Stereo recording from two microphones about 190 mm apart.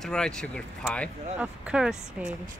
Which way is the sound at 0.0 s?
5° left (ahead or behind).